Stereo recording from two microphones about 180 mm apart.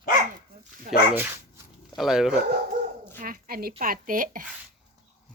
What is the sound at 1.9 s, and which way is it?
Speech, centre (ahead or behind).